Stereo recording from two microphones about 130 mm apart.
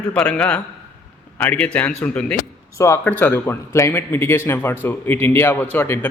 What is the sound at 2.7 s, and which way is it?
A man's voice, 25° left (ahead or behind).